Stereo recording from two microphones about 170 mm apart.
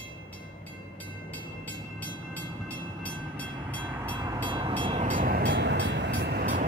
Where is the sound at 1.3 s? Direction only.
10° left (ahead or behind).